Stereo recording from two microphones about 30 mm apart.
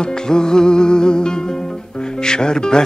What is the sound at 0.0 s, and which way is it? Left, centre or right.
Music, left.